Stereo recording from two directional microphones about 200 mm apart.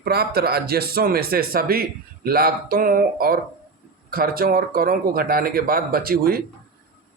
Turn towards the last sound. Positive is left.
turn(degrees=-50)  # may be behind; listen again after turning